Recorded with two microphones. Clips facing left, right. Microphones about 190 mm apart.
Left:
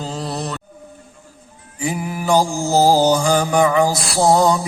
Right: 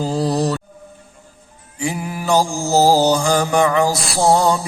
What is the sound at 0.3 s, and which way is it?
Music, 10° right (ahead or behind).